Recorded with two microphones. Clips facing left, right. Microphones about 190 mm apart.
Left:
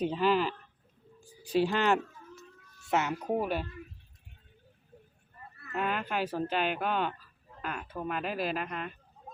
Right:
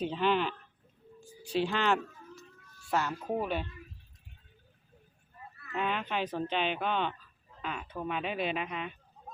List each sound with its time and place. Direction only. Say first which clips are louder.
0.0 s speech: left 2 dB; 5° left (ahead or behind)
1.4 s a sound: left 3 dB; 10° left (ahead or behind)
2.8 s speech: left 2 dB; 20° left (ahead or behind)
5.7 s speech: left 1 dB; 5° left (ahead or behind)